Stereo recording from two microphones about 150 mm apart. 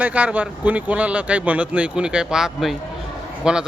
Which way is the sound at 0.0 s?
10° right (ahead or behind).